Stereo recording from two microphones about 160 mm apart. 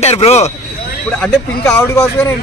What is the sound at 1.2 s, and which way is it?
Speech, 5° left (ahead or behind).